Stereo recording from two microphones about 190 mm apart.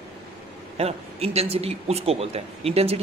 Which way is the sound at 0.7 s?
35° right (ahead or behind).